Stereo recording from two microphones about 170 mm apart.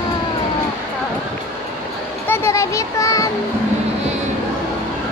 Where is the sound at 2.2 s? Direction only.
15° left (ahead or behind).